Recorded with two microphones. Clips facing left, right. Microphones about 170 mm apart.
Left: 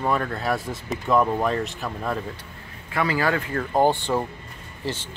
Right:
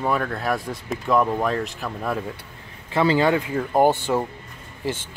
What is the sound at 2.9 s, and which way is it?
Speech, 25° right (ahead or behind).